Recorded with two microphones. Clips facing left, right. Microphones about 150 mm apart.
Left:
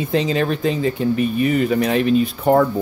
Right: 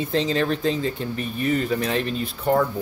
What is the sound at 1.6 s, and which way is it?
Speech, 65° left (ahead or behind).